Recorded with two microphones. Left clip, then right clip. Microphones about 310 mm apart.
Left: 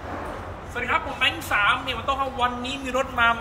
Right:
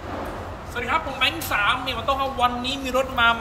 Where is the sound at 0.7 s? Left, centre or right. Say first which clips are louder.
Right 1 dB; centre.